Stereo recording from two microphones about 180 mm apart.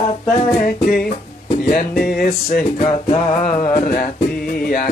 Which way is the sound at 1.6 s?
55° left (ahead or behind).